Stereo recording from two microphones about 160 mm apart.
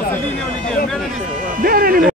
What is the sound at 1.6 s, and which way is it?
Speech, 65° right (ahead or behind).